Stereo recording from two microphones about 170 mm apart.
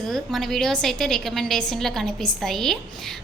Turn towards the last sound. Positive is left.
turn(degrees=0)  # may be behind; listen again after turning